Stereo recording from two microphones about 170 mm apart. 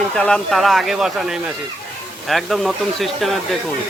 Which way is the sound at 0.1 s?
5° left (ahead or behind).